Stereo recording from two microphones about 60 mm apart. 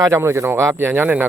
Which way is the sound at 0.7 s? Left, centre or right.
Right.